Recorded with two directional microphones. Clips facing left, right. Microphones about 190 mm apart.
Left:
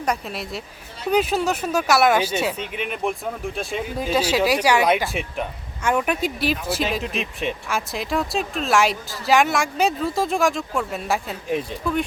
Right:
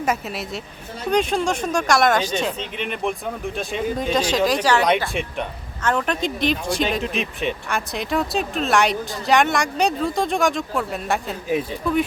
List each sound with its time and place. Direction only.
0.0 s speech: 5° right (ahead or behind)